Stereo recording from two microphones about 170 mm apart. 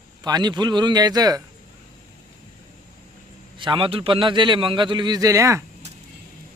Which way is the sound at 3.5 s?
30° right (ahead or behind).